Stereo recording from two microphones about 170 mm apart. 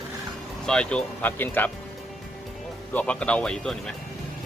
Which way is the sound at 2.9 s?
5° left (ahead or behind).